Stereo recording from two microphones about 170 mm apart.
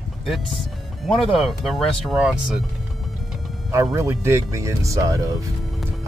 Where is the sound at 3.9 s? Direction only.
15° right (ahead or behind).